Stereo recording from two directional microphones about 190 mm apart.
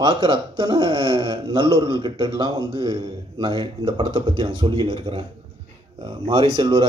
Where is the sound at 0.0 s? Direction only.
25° right (ahead or behind).